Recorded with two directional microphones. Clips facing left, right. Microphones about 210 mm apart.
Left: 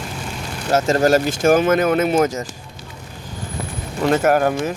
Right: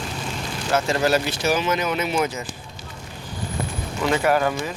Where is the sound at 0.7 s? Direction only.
45° left (ahead or behind).